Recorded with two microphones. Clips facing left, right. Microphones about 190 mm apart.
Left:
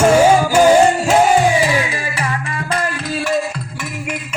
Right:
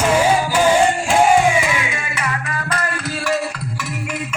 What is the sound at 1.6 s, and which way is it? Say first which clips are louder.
Music: left 5 dB; 35° left (ahead or behind).